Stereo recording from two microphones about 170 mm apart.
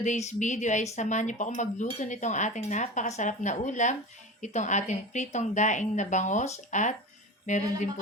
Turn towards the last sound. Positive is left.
turn(degrees=45)  # may be behind; listen again after turning